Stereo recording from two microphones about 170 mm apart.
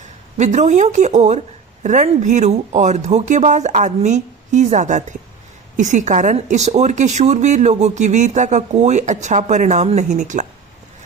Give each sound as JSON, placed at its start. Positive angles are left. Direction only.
{"t": 0.3, "sound": "speech", "side_deg": -45}